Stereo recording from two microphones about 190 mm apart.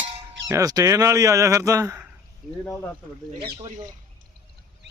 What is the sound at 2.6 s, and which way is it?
Speech, 10° left (ahead or behind).